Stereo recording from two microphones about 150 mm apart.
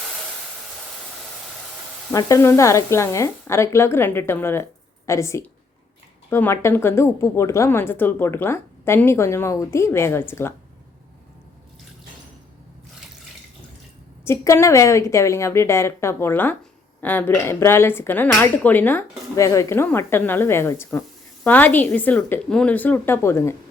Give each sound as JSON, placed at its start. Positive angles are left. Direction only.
{"t": 2.1, "sound": "a woman's voice", "side_deg": 20}
{"t": 14.3, "sound": "a woman's voice", "side_deg": 20}